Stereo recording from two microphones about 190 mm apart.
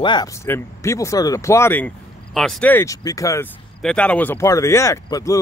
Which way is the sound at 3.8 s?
5° left (ahead or behind).